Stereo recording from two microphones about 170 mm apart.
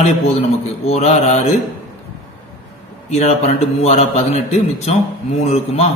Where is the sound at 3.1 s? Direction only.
40° left (ahead or behind).